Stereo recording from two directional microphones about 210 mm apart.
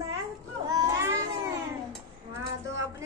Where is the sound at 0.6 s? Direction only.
15° right (ahead or behind).